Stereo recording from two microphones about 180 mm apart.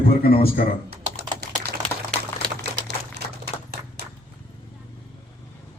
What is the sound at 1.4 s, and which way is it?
Typing, 60° right (ahead or behind).